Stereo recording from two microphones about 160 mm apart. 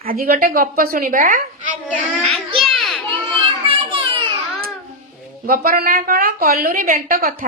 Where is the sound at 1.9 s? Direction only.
10° left (ahead or behind).